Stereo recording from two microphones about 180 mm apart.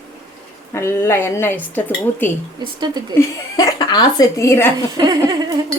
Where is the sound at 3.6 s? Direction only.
20° left (ahead or behind).